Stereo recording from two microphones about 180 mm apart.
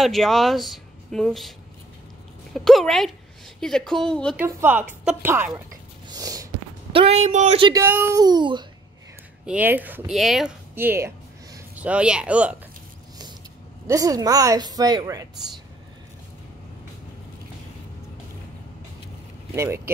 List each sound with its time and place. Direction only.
0.0 s speech: centre (ahead or behind)
2.5 s a woman's voice: centre (ahead or behind)
4.4 s a woman's voice: 10° right (ahead or behind)
6.0 s snort: 20° right (ahead or behind)
6.9 s speech: 35° right (ahead or behind)
7.6 s a woman's voice: 15° right (ahead or behind)
8.2 s a woman's voice: 25° right (ahead or behind)
9.5 s speech: 10° right (ahead or behind)
13.8 s a woman's voice: 20° right (ahead or behind)
19.5 s a woman's voice: 15° right (ahead or behind)